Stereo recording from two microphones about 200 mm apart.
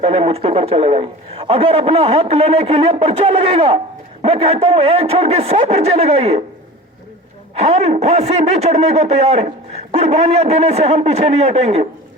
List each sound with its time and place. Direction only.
0.0 s a man's voice: 30° right (ahead or behind)
7.5 s speech: 30° right (ahead or behind)